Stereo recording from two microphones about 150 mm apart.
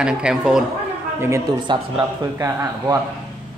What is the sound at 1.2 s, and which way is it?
Speech, 20° right (ahead or behind).